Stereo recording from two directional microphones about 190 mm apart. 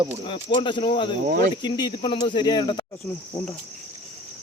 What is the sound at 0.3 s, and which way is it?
Speech, 30° left (ahead or behind).